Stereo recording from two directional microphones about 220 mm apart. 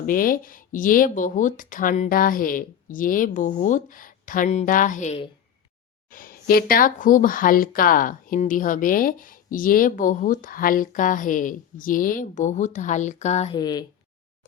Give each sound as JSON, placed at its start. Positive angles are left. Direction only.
{"t": 0.0, "sound": "speech", "side_deg": 40}
{"t": 13.6, "sound": "speech", "side_deg": 20}